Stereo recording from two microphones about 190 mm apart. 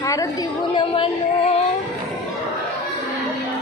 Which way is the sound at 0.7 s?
25° left (ahead or behind).